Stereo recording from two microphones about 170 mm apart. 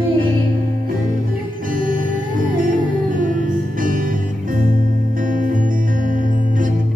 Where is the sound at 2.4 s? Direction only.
55° right (ahead or behind).